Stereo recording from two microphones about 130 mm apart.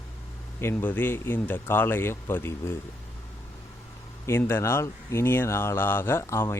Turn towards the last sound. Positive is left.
turn(degrees=20)  # may be behind; listen again after turning